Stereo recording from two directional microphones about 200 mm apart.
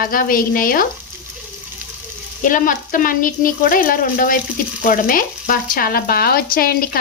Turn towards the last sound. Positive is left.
turn(degrees=50)  # may be behind; listen again after turning